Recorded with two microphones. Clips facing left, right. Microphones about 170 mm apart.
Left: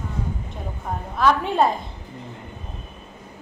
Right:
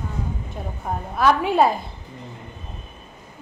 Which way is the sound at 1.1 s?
5° right (ahead or behind).